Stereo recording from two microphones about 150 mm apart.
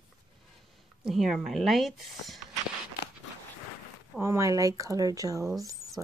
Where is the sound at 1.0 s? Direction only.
Centre (ahead or behind).